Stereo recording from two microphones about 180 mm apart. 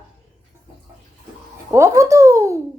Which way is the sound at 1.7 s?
15° right (ahead or behind).